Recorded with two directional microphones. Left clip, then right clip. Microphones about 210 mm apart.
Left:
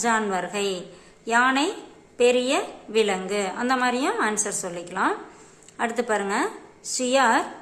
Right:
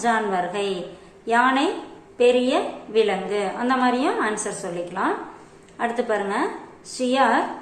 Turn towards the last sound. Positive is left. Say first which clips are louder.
# right 1 dB
turn(degrees=30)  # may be behind; listen again after turning